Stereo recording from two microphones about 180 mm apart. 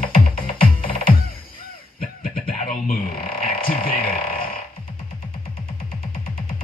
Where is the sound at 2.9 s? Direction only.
55° left (ahead or behind).